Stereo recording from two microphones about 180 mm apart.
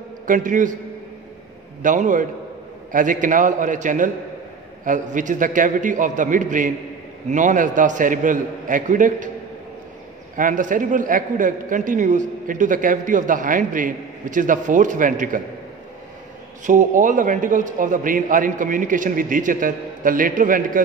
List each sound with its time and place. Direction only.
0.3 s a man's voice: 45° right (ahead or behind)
1.8 s a man's voice: 45° right (ahead or behind)
10.3 s a man's voice: 45° right (ahead or behind)
16.6 s a man's voice: 45° right (ahead or behind)